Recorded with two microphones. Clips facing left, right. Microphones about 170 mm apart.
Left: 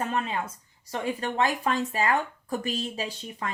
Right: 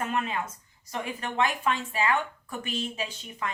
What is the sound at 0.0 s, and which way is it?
Speech, 30° left (ahead or behind).